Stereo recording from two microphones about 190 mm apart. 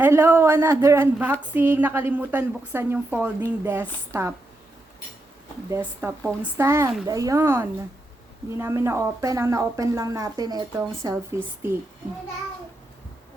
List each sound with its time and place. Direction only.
0.0 s a woman's voice: 10° right (ahead or behind)
5.7 s a woman's voice: 10° right (ahead or behind)